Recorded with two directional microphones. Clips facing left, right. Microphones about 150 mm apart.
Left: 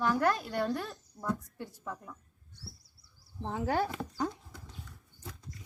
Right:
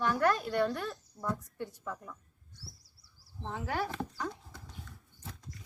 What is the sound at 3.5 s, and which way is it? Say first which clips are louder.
Speech: left 5 dB; 35° left (ahead or behind).